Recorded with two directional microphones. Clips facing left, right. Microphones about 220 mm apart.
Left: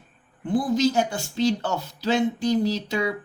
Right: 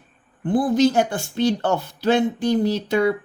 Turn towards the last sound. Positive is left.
turn(degrees=-55)  # may be behind; listen again after turning